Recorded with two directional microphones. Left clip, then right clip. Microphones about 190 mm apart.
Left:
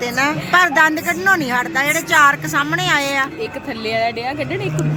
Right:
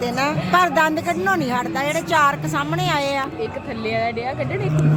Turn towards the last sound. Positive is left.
turn(degrees=60)  # may be behind; listen again after turning